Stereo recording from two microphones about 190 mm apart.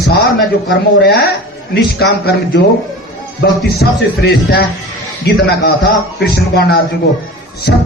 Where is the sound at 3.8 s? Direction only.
55° left (ahead or behind).